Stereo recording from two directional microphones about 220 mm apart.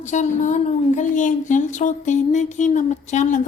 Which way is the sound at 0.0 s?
35° left (ahead or behind).